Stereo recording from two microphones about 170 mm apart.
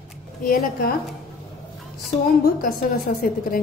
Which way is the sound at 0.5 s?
60° left (ahead or behind).